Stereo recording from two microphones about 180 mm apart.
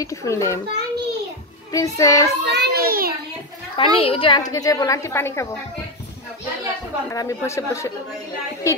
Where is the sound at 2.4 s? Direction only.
65° right (ahead or behind).